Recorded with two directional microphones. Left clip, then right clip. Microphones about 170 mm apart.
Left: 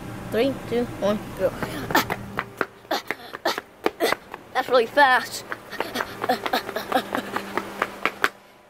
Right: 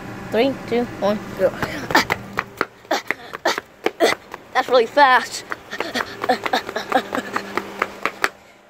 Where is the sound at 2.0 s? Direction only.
30° right (ahead or behind).